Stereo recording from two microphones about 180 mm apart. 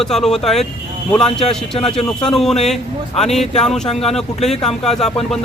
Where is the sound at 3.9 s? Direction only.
35° left (ahead or behind).